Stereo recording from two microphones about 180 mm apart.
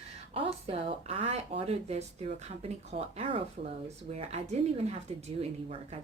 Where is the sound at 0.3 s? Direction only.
30° right (ahead or behind).